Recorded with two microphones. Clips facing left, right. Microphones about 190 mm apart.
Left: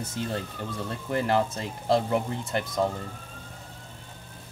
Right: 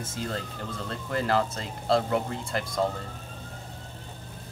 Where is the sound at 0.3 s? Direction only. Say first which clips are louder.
Left 2 dB; 15° left (ahead or behind).